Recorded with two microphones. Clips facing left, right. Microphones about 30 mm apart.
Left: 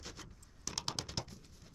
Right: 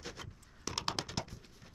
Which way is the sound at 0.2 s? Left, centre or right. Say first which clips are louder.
Right 4 dB; right.